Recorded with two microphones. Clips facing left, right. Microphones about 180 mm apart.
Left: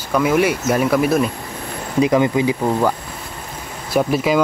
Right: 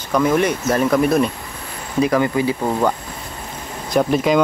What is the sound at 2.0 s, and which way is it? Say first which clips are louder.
Speech: left 2 dB; 20° left (ahead or behind).